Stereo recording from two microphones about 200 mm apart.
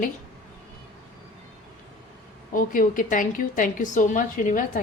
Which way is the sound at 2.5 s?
45° left (ahead or behind).